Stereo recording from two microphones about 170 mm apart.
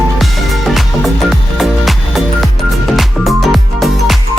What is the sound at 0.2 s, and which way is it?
Music, centre (ahead or behind).